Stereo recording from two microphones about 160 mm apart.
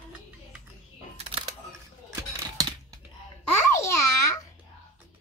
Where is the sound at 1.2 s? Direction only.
35° right (ahead or behind).